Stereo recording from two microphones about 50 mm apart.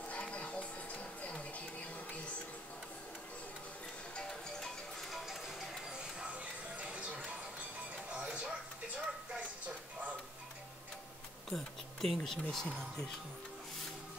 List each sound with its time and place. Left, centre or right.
0.1 s music: left
4.1 s music: centre
5.9 s music: centre
11.5 s insect: centre
12.2 s speech: centre